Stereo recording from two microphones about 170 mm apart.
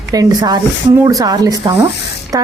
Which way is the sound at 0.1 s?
20° right (ahead or behind).